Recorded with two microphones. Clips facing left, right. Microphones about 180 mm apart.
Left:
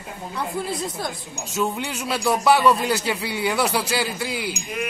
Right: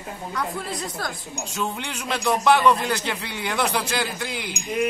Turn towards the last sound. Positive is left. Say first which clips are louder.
# left 3 dB
turn(degrees=5)  # may be behind; listen again after turning